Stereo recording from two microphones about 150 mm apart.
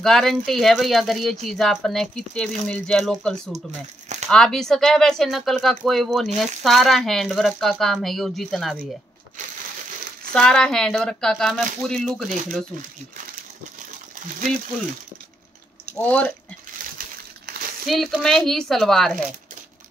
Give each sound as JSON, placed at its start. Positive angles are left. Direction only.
{"t": 0.0, "sound": "speech", "side_deg": 5}
{"t": 10.3, "sound": "speech", "side_deg": 5}
{"t": 14.5, "sound": "speech", "side_deg": 5}
{"t": 16.0, "sound": "speech", "side_deg": 10}
{"t": 17.5, "sound": "crumpling", "side_deg": -90}
{"t": 17.8, "sound": "speech", "side_deg": 0}